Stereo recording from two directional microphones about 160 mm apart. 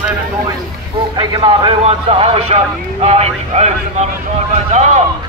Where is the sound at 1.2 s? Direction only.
30° right (ahead or behind).